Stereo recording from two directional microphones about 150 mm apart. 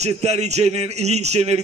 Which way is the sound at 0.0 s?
45° right (ahead or behind).